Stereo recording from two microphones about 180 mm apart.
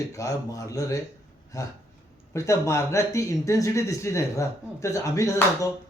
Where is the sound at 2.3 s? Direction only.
15° left (ahead or behind).